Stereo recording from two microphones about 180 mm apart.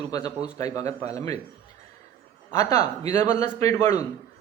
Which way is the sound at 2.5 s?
15° left (ahead or behind).